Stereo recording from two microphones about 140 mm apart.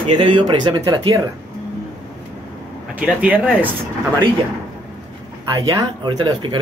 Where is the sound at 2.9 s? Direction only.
10° right (ahead or behind).